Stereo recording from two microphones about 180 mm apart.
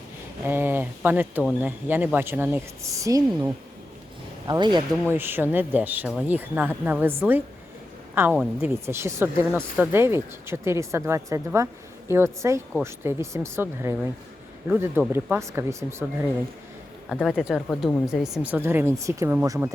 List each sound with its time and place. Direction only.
0.4 s speech: 10° right (ahead or behind)
5.1 s speech: 10° right (ahead or behind)
17.1 s speech: centre (ahead or behind)